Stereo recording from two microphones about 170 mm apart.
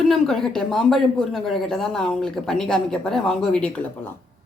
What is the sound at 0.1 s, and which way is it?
Speech, centre (ahead or behind).